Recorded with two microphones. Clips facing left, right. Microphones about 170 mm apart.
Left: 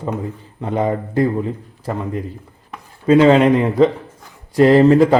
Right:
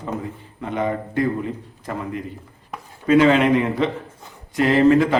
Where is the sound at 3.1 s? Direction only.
30° left (ahead or behind).